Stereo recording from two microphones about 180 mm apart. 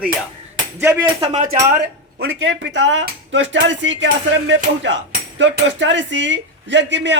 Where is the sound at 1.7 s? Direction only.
65° right (ahead or behind); by 4.0 s 90° right.